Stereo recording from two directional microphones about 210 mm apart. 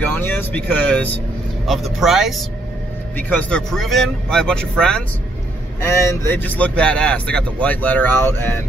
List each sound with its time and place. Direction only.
0.0 s speech: 10° left (ahead or behind)